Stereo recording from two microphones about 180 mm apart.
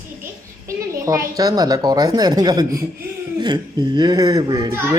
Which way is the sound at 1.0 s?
20° right (ahead or behind).